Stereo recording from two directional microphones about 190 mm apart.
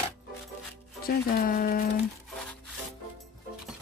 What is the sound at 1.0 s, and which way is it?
Speech, 50° left (ahead or behind).